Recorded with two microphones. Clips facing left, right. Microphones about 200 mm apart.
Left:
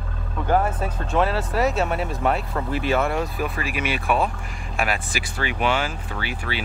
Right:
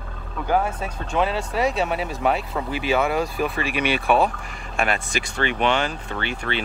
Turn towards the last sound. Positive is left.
turn(degrees=5)  # may be behind; listen again after turning